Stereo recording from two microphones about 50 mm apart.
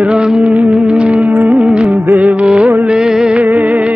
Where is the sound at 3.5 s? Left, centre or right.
Right.